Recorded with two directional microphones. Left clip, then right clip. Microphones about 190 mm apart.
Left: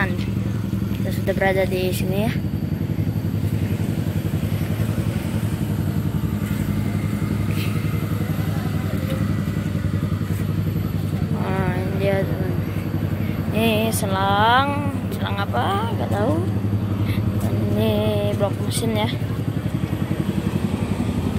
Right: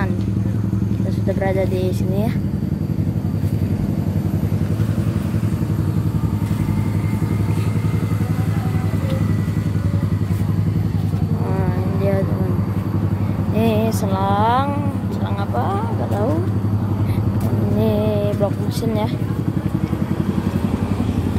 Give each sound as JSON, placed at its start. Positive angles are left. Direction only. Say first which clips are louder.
{"t": 1.4, "sound": "speech", "louder": "left 2 dB", "side_deg": 0}
{"t": 13.6, "sound": "music", "louder": "right 1 dB", "side_deg": -10}
{"t": 17.7, "sound": "a sound", "louder": "right 2 dB", "side_deg": -15}